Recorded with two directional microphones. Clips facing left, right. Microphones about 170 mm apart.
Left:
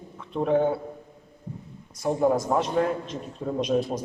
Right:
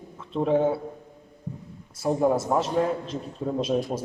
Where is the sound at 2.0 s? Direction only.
5° right (ahead or behind).